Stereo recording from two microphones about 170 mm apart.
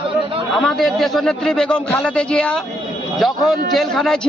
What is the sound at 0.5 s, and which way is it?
A man's voice, centre (ahead or behind).